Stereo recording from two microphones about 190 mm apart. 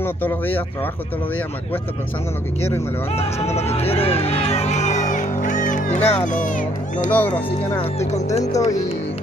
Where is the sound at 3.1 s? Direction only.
35° left (ahead or behind).